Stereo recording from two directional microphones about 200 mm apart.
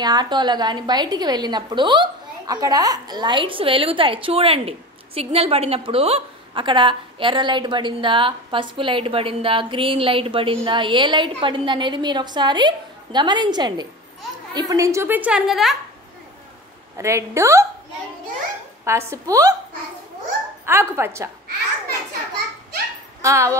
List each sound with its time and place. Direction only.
0.0 s a woman's voice: 20° right (ahead or behind); by 15.7 s centre (ahead or behind)
16.9 s a woman's voice: 15° right (ahead or behind)
18.9 s a woman's voice: 15° right (ahead or behind)
20.6 s a woman's voice: 10° right (ahead or behind)
23.2 s a woman's voice: 15° right (ahead or behind)